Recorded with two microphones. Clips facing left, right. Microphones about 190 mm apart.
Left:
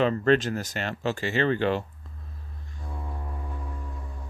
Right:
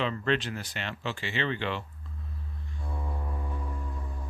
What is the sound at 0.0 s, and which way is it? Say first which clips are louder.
Speech: left 7 dB; 45° left (ahead or behind).